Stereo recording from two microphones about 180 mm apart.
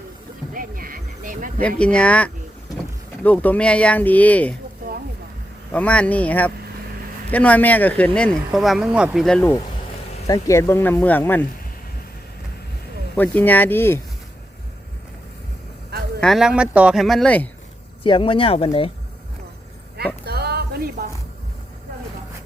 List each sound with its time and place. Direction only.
0.5 s a sound: 50° right (ahead or behind)
1.6 s speech: 5° left (ahead or behind)
5.7 s speech: 5° left (ahead or behind)
10.2 s speech: 20° left (ahead or behind)
13.1 s speech: 10° left (ahead or behind)
16.2 s speech: centre (ahead or behind)
18.0 s speech: 30° left (ahead or behind)
20.2 s a sound: 60° right (ahead or behind)